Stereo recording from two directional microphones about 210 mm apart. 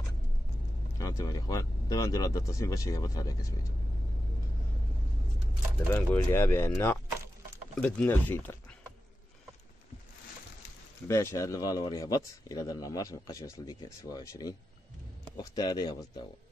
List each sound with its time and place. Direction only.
0.9 s a man's voice: 15° left (ahead or behind)
5.9 s a man's voice: 10° left (ahead or behind)
11.1 s a man's voice: 15° left (ahead or behind)